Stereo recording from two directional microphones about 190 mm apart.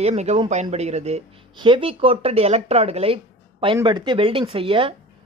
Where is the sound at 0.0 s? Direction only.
35° right (ahead or behind).